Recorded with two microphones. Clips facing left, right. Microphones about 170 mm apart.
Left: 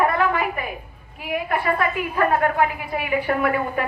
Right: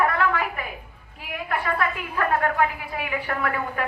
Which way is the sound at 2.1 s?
20° left (ahead or behind).